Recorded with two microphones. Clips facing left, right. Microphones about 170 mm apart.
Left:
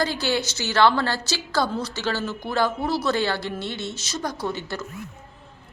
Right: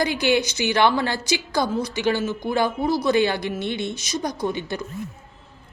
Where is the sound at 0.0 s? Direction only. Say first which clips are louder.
Right 4 dB; 15° right (ahead or behind).